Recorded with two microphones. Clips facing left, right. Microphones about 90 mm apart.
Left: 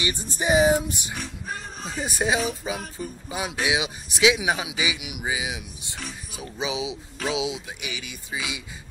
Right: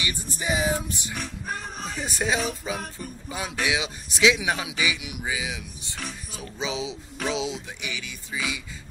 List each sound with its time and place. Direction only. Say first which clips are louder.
0.0 s music: left 4 dB; 25° left (ahead or behind)
1.1 s speech: right 1 dB; centre (ahead or behind)
5.9 s speech: even; centre (ahead or behind)